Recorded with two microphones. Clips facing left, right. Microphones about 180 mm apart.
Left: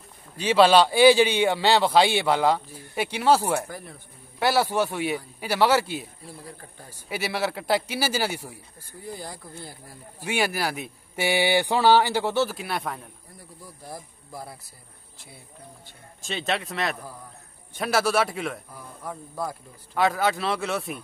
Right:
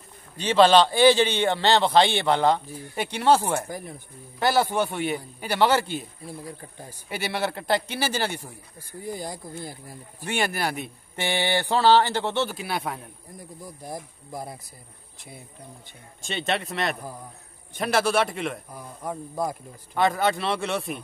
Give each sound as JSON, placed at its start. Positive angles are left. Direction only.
{"t": 0.4, "sound": "a man's voice", "side_deg": 5}
{"t": 3.6, "sound": "speech", "side_deg": -15}
{"t": 4.4, "sound": "a man's voice", "side_deg": 5}
{"t": 7.1, "sound": "a man's voice", "side_deg": 5}
{"t": 9.0, "sound": "speech", "side_deg": -15}
{"t": 10.2, "sound": "a man's voice", "side_deg": 5}
{"t": 13.4, "sound": "speech", "side_deg": -15}
{"t": 16.2, "sound": "a man's voice", "side_deg": 0}
{"t": 18.7, "sound": "speech", "side_deg": -15}
{"t": 20.0, "sound": "a man's voice", "side_deg": 5}